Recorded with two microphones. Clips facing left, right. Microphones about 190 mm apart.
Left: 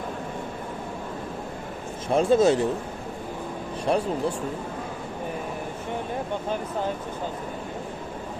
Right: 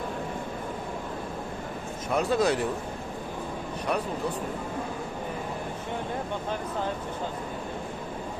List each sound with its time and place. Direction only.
2.0 s speech: 25° left (ahead or behind)
3.9 s speech: 30° left (ahead or behind)